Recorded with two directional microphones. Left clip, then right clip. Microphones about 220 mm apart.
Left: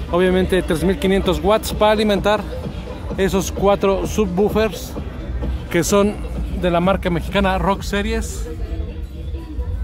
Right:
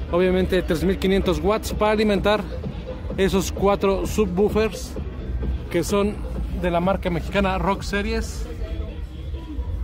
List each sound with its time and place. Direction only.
0.1 s speech: 5° left (ahead or behind)
5.7 s speech: 25° left (ahead or behind)
6.6 s speech: 10° left (ahead or behind)